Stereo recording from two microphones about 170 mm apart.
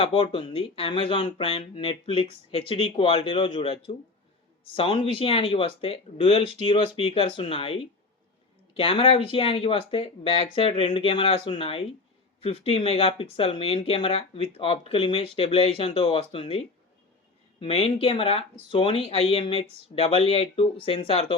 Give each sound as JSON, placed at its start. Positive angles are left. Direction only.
{"t": 0.0, "sound": "speech", "side_deg": 35}